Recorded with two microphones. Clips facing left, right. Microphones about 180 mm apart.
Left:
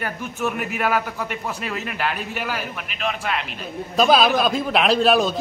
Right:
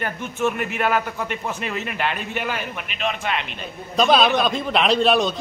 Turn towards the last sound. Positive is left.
turn(degrees=5)  # may be behind; listen again after turning